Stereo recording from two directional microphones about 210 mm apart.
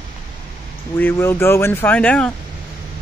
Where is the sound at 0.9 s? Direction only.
10° left (ahead or behind).